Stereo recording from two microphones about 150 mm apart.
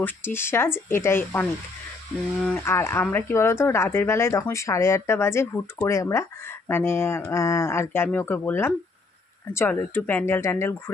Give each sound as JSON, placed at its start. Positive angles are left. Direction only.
{"t": 0.0, "sound": "speech", "side_deg": 15}
{"t": 2.6, "sound": "speech", "side_deg": 15}